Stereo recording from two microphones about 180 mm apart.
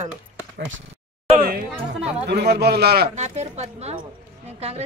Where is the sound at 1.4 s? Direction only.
55° right (ahead or behind).